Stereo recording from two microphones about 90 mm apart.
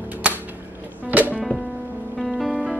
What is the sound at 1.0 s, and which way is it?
Music, 20° right (ahead or behind).